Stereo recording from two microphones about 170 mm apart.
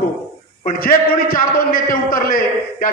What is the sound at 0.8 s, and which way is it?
A man's voice, 55° left (ahead or behind).